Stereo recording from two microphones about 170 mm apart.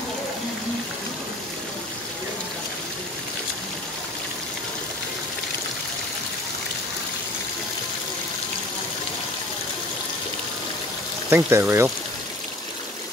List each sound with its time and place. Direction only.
11.2 s speech: 15° right (ahead or behind)